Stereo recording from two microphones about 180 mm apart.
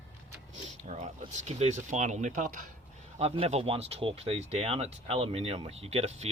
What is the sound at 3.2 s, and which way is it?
Speech, 35° right (ahead or behind).